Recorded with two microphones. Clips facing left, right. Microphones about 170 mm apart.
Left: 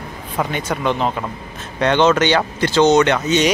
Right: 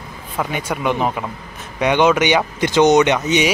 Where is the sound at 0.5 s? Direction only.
10° right (ahead or behind).